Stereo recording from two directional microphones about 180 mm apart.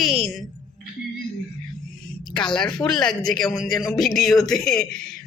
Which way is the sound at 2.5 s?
5° left (ahead or behind).